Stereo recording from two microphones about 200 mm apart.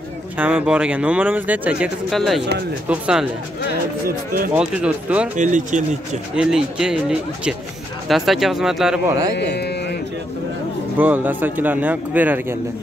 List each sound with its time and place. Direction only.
0.4 s speech: 5° right (ahead or behind)
4.6 s speech: 5° right (ahead or behind)
5.4 s speech: 40° right (ahead or behind)
6.3 s speech: 5° right (ahead or behind)
9.4 s a sound: 55° left (ahead or behind)
11.0 s speech: 10° right (ahead or behind)